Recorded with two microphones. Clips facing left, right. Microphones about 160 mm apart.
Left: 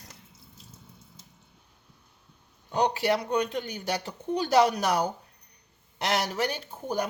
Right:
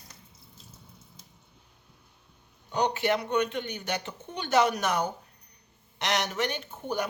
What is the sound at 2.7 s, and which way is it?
Speech, 35° left (ahead or behind).